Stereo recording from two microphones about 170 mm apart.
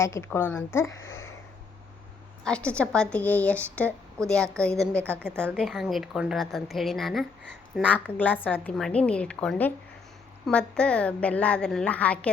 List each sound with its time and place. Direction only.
0.0 s a woman's voice: 15° left (ahead or behind)
2.4 s a woman's voice: 5° left (ahead or behind)